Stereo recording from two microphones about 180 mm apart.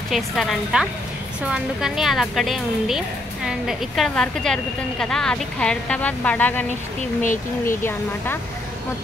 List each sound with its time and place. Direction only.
0.1 s a woman's voice: centre (ahead or behind)
7.2 s speech: 45° left (ahead or behind)